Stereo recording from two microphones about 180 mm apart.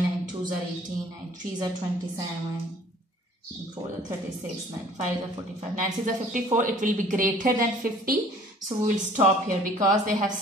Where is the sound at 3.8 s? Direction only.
20° right (ahead or behind).